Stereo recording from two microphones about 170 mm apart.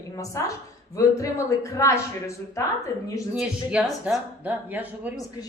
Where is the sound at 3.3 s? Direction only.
5° right (ahead or behind).